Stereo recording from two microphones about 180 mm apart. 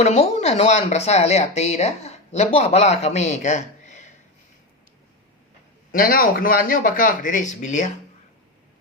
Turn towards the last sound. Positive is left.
turn(degrees=45)  # may be behind; listen again after turning